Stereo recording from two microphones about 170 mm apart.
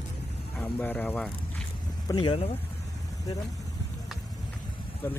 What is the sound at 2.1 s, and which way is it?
Speech, 30° left (ahead or behind).